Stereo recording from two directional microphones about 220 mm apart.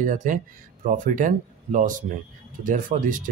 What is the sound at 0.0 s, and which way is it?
Speech, 35° right (ahead or behind).